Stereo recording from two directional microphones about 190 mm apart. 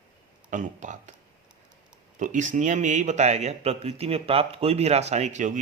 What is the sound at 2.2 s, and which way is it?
Speech, 40° right (ahead or behind).